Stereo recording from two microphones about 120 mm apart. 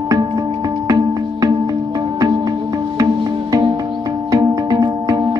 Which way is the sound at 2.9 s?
30° right (ahead or behind).